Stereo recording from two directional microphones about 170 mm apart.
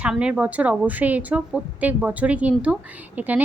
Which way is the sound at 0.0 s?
5° right (ahead or behind).